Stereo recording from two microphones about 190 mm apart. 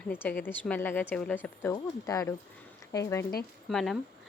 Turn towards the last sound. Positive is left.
turn(degrees=0)  # may be behind; listen again after turning